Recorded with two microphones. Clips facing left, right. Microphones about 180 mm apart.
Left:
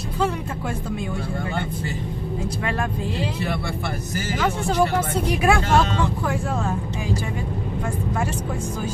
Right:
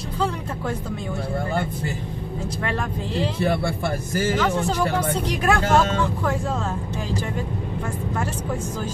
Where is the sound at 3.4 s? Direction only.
50° right (ahead or behind).